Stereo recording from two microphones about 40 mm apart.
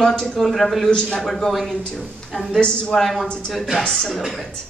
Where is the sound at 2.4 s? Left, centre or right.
Left.